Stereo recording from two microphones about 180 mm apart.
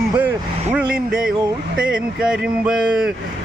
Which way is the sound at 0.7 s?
5° right (ahead or behind).